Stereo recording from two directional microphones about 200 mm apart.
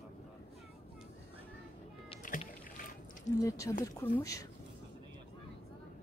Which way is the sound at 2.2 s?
40° left (ahead or behind).